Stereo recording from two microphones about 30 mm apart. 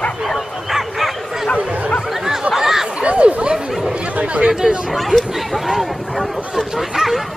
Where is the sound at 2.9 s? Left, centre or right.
Right.